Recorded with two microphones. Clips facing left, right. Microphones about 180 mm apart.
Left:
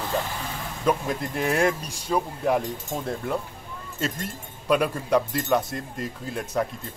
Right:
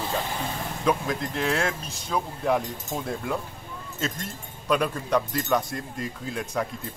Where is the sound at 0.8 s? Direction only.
10° left (ahead or behind).